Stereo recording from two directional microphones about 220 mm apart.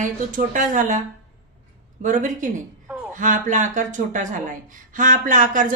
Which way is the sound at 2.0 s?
35° right (ahead or behind).